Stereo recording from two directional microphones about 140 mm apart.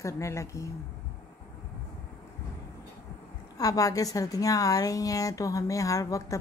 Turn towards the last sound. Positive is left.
turn(degrees=25)  # may be behind; listen again after turning